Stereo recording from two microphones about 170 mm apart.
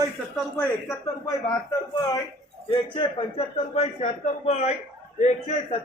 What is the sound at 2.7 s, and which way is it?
A man's voice, 35° left (ahead or behind).